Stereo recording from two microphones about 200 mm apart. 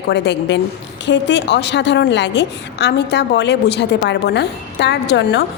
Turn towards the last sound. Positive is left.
turn(degrees=60)  # may be behind; listen again after turning